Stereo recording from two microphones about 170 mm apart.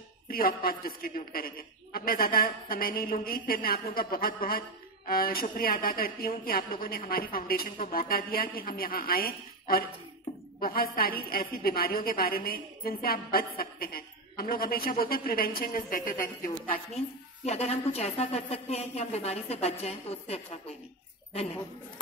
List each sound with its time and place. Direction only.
0.3 s a woman's voice: 60° left (ahead or behind)
17.5 s a woman's voice: 35° left (ahead or behind)